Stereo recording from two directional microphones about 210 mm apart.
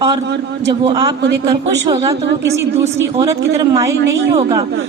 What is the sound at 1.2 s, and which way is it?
Speech, 55° right (ahead or behind).